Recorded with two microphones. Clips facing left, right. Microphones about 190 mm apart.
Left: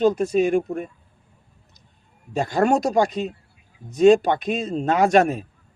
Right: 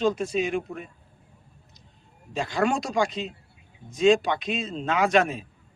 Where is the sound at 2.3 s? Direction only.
45° left (ahead or behind).